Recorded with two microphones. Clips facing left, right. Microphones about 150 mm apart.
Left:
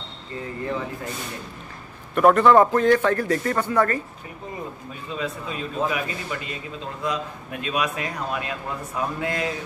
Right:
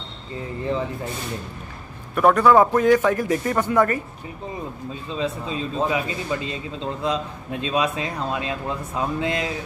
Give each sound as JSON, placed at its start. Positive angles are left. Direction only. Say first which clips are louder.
{"t": 2.1, "sound": "a man's voice", "louder": "even", "side_deg": 0}
{"t": 5.1, "sound": "speech", "louder": "right 3 dB", "side_deg": -25}